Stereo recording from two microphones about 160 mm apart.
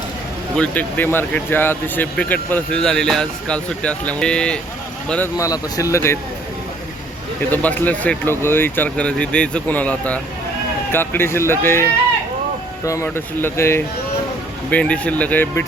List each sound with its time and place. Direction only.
0.5 s speech: 10° left (ahead or behind)
5.4 s speech: 20° left (ahead or behind)
7.5 s speech: 10° left (ahead or behind)